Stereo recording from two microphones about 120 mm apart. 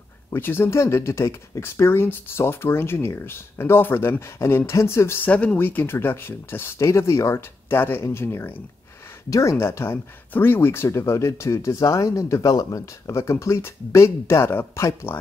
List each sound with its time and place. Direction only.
0.3 s speech: 20° left (ahead or behind)